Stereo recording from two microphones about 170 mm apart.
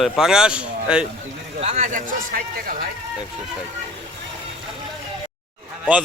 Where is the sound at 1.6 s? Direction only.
40° right (ahead or behind).